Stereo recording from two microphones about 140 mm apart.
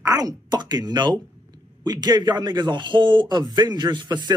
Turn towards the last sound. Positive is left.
turn(degrees=-30)  # may be behind; listen again after turning